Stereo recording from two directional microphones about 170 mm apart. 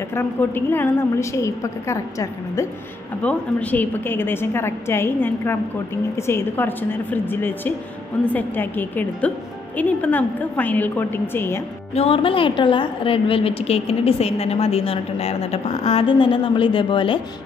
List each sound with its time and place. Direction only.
0.1 s a woman's voice: 15° left (ahead or behind)
11.9 s a woman's voice: 35° left (ahead or behind)